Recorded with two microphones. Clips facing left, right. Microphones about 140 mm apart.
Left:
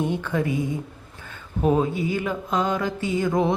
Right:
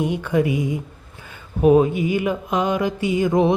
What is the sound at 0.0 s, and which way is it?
Speech, 15° right (ahead or behind).